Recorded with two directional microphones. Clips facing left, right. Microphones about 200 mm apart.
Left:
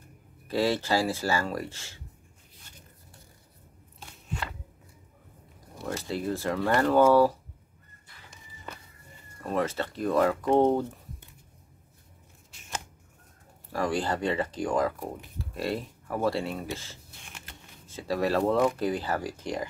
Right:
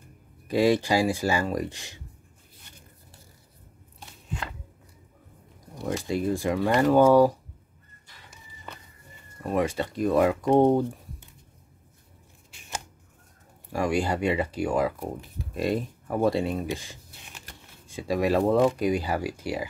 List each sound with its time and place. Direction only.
0.5 s speech: 15° right (ahead or behind)
5.8 s speech: 15° right (ahead or behind)
9.4 s speech: 15° right (ahead or behind)
13.7 s speech: 15° right (ahead or behind)